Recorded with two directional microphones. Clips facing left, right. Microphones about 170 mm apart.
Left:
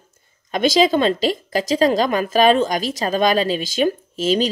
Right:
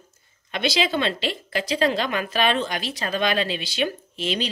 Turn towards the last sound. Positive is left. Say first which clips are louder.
# left 8 dB
turn(degrees=40)  # may be behind; listen again after turning